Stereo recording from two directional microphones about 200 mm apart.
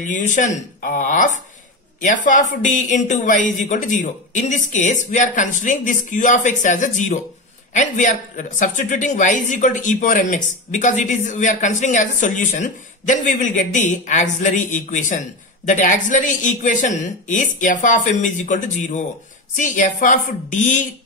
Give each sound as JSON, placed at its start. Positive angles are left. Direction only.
{"t": 0.0, "sound": "speech", "side_deg": 40}